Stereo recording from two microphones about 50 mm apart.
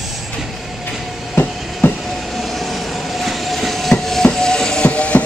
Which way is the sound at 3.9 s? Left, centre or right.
Centre.